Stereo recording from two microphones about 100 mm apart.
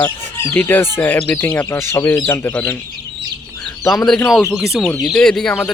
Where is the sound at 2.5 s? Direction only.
15° left (ahead or behind).